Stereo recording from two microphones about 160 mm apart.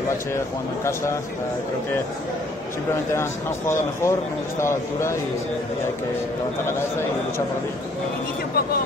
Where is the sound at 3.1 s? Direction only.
15° left (ahead or behind).